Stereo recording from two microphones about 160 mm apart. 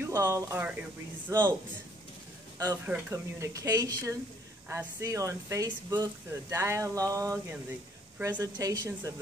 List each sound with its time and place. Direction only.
0.0 s speech: 15° right (ahead or behind)
2.6 s speech: 20° right (ahead or behind)
8.4 s speech: 25° right (ahead or behind)